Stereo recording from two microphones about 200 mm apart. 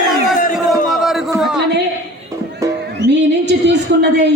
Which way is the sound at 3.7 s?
60° right (ahead or behind).